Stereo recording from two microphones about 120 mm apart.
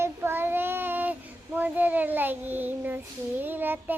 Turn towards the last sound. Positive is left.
turn(degrees=-15)  # may be behind; listen again after turning